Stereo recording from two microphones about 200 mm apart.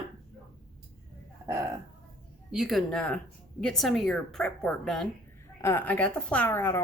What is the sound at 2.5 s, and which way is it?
Speech, centre (ahead or behind).